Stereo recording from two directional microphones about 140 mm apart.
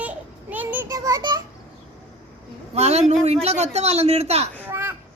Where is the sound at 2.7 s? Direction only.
50° right (ahead or behind).